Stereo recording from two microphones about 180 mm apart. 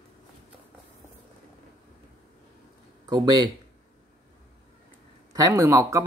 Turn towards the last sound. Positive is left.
turn(degrees=-15)  # may be behind; listen again after turning